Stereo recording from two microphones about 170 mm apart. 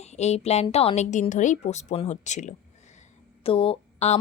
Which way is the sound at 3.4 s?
35° left (ahead or behind).